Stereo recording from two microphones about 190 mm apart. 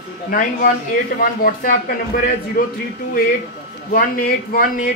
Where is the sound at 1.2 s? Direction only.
50° left (ahead or behind).